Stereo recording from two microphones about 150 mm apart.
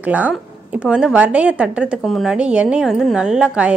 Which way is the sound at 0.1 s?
10° right (ahead or behind).